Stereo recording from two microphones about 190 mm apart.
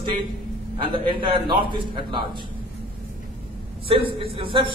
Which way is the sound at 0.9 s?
25° right (ahead or behind).